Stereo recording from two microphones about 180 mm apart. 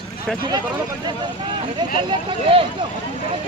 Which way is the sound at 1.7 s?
30° right (ahead or behind).